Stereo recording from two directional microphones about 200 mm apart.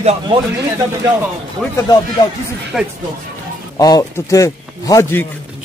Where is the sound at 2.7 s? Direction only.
Centre (ahead or behind).